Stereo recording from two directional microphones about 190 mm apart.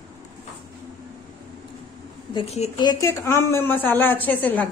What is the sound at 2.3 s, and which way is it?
Speech, 30° left (ahead or behind).